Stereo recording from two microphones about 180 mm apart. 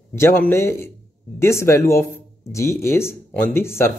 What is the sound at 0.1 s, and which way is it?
Speech, 15° left (ahead or behind).